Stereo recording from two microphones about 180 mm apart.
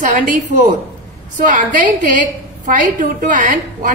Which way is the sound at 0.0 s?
50° right (ahead or behind).